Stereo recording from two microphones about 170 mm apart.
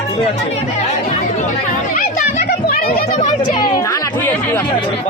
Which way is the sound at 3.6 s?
25° left (ahead or behind).